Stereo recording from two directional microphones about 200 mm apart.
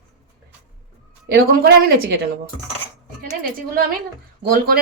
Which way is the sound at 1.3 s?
50° right (ahead or behind).